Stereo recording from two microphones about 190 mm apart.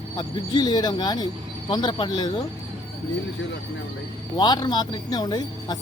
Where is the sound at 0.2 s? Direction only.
20° left (ahead or behind).